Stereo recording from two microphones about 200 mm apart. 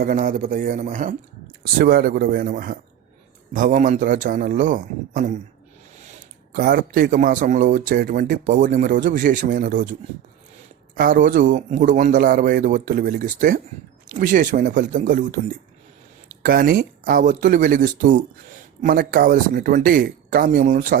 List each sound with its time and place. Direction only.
0.0 s a man's voice: 40° right (ahead or behind)
1.8 s a man's voice: 50° right (ahead or behind)
6.0 s a sound: 35° right (ahead or behind)
6.6 s a man's voice: 50° right (ahead or behind)
10.9 s a man's voice: 45° right (ahead or behind)
16.4 s a man's voice: 45° right (ahead or behind)